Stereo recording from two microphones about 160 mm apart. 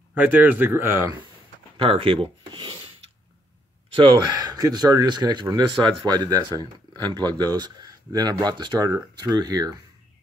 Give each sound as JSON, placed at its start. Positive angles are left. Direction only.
{"t": 0.1, "sound": "speech", "side_deg": -10}
{"t": 1.8, "sound": "speech", "side_deg": -35}
{"t": 3.9, "sound": "speech", "side_deg": -30}